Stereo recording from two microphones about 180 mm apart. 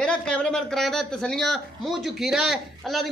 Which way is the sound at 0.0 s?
5° left (ahead or behind).